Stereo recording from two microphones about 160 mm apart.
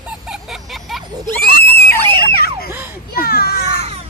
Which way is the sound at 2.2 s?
75° left (ahead or behind).